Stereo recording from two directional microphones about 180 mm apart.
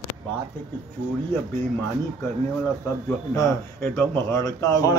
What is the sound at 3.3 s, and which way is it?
Speech, 15° left (ahead or behind).